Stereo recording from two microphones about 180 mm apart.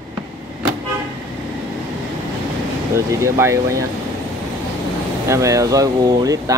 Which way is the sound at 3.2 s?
15° right (ahead or behind).